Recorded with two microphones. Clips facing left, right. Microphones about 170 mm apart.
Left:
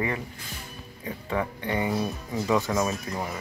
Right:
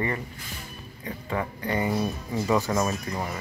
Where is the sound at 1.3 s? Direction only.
5° left (ahead or behind).